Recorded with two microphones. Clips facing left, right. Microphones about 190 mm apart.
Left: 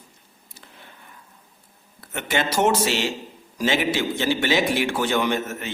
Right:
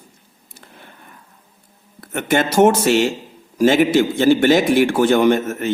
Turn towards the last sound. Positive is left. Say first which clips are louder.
# right 9 dB
turn(degrees=-45)  # may be behind; listen again after turning